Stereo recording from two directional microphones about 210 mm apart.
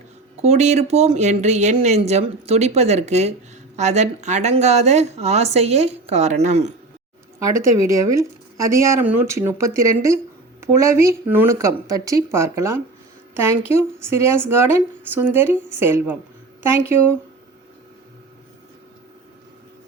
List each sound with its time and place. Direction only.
0.4 s a woman's voice: 35° right (ahead or behind)
7.3 s a woman's voice: 15° right (ahead or behind)